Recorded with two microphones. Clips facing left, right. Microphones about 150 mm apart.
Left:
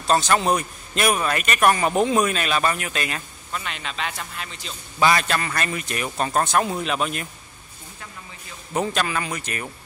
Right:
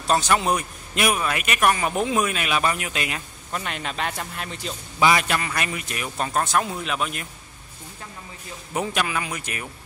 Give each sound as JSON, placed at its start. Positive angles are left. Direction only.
{"t": 0.0, "sound": "a man's voice", "side_deg": -10}
{"t": 3.5, "sound": "speech", "side_deg": -45}
{"t": 5.0, "sound": "a man's voice", "side_deg": -10}
{"t": 8.7, "sound": "speech", "side_deg": -10}